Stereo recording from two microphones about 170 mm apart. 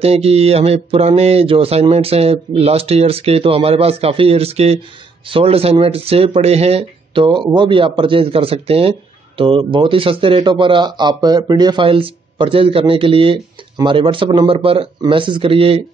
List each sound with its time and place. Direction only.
0.0 s speech: 35° right (ahead or behind)